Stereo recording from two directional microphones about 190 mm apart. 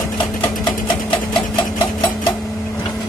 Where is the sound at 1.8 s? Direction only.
25° left (ahead or behind).